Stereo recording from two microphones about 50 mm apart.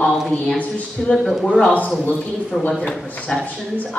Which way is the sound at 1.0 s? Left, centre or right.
Centre.